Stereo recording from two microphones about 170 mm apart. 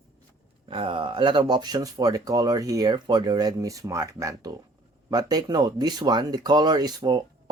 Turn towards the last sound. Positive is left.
turn(degrees=-25)  # may be behind; listen again after turning